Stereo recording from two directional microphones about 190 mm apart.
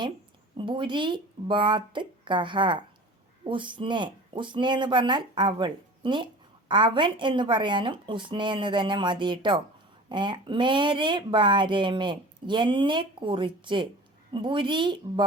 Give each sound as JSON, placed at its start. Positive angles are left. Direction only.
{"t": 0.5, "sound": "speech", "side_deg": -25}